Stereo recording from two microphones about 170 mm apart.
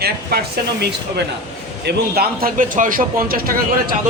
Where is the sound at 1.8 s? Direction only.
65° right (ahead or behind).